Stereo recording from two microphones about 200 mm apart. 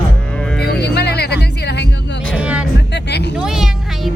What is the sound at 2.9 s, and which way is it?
Music, 55° left (ahead or behind).